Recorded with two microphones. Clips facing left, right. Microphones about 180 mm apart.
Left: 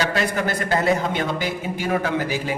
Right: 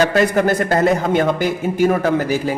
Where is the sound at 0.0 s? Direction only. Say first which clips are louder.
Right 8 dB; 45° right (ahead or behind).